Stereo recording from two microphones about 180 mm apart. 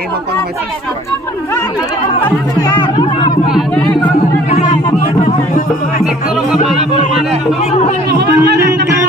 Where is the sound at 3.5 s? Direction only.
Centre (ahead or behind).